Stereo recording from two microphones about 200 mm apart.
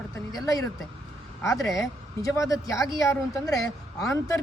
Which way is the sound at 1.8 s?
15° left (ahead or behind).